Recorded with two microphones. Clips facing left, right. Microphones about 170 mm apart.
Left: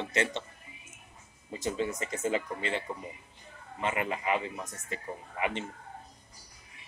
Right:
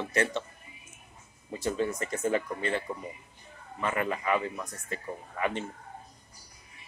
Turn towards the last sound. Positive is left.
turn(degrees=20)  # may be behind; listen again after turning